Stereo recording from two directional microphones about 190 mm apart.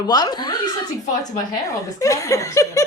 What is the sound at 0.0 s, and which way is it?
Speech, 20° left (ahead or behind).